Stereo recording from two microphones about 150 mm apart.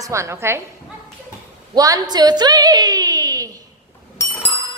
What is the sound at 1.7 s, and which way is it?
A woman's voice, 25° right (ahead or behind).